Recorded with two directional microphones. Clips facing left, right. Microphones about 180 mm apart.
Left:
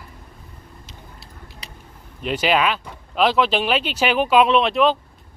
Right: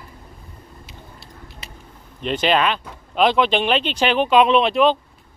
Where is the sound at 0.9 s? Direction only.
Centre (ahead or behind).